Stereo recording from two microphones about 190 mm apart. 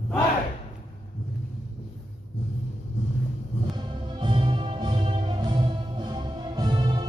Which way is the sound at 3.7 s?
25° right (ahead or behind).